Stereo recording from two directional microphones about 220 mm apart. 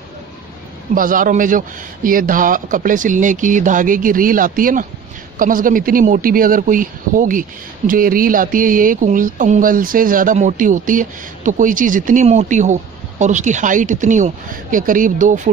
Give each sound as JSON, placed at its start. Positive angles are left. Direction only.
{"t": 0.9, "sound": "speech", "side_deg": -40}